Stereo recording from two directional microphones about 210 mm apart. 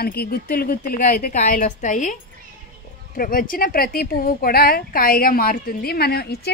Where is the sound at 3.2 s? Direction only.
45° left (ahead or behind).